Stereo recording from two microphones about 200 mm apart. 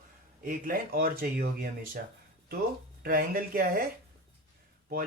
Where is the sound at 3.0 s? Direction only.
45° right (ahead or behind).